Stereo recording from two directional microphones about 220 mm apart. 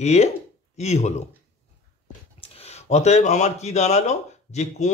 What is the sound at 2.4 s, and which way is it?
Speech, 25° left (ahead or behind).